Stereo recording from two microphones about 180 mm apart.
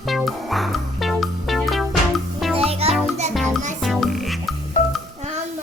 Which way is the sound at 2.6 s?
35° right (ahead or behind).